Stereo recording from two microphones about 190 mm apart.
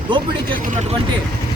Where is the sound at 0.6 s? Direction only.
35° right (ahead or behind).